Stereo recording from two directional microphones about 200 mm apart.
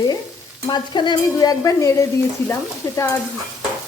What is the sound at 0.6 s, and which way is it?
Stir, 20° left (ahead or behind).